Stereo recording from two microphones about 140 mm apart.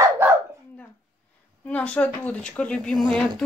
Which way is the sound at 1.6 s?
10° left (ahead or behind).